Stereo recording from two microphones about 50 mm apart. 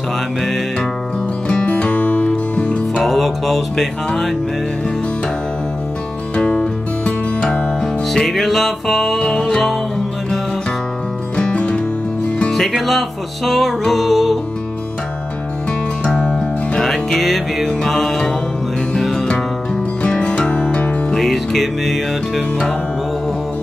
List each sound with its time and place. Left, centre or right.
1.5 s music: left
3.0 s music: centre
6.3 s music: left
7.8 s music: centre
11.3 s music: left
12.4 s music: centre
16.2 s music: centre
20.0 s music: centre
21.1 s music: centre